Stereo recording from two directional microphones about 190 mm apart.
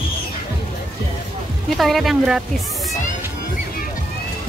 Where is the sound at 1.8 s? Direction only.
Centre (ahead or behind).